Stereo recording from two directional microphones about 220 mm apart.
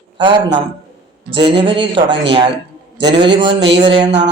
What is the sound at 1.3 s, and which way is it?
Mantra, 25° right (ahead or behind).